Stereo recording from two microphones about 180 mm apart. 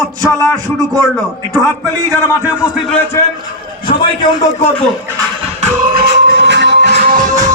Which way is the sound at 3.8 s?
30° left (ahead or behind).